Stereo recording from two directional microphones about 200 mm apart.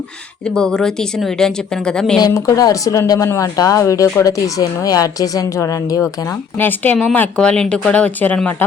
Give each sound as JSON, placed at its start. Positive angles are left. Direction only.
{"t": 0.4, "sound": "a woman's voice", "side_deg": 5}
{"t": 2.2, "sound": "speech", "side_deg": 20}